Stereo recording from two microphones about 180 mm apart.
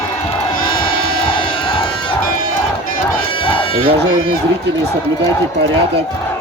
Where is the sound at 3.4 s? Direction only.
30° left (ahead or behind).